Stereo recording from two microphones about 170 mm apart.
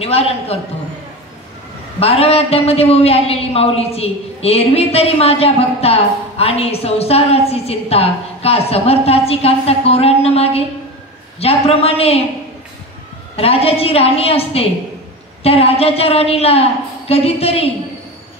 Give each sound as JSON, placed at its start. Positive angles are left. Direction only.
{"t": 0.0, "sound": "a man's voice", "side_deg": 35}
{"t": 2.0, "sound": "a man's voice", "side_deg": 35}
{"t": 13.4, "sound": "a man's voice", "side_deg": 35}